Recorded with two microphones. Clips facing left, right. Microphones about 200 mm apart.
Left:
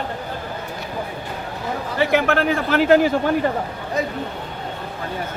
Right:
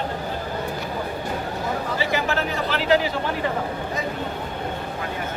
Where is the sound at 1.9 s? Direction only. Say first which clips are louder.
Left 9 dB; 60° left (ahead or behind).